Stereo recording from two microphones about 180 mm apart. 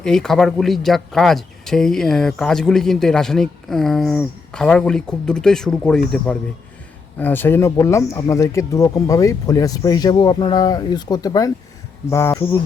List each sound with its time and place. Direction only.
0.0 s speech: 5° left (ahead or behind)